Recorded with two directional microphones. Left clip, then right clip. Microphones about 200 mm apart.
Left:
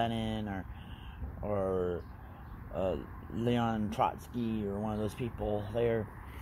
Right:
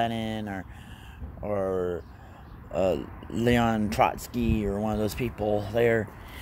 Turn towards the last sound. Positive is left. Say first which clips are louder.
# right 8 dB
turn(degrees=-10)  # may be behind; listen again after turning